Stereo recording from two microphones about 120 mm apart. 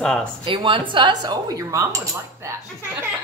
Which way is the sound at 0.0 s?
10° left (ahead or behind).